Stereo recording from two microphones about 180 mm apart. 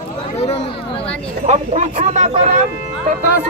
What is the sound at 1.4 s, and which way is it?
Speech, 40° right (ahead or behind).